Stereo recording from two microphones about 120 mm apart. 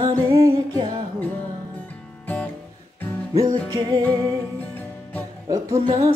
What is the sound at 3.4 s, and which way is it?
Music, 35° right (ahead or behind).